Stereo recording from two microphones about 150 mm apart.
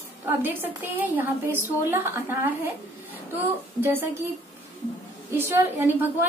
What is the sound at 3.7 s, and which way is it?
Speech, 15° right (ahead or behind).